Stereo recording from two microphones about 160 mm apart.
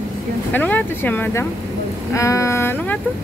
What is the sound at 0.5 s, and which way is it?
Speech, 10° left (ahead or behind).